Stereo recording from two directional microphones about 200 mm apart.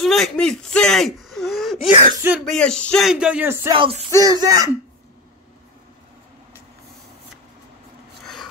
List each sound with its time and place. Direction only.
0.0 s speech: centre (ahead or behind)
3.7 s a sound: 25° right (ahead or behind)
4.2 s speech: 20° right (ahead or behind)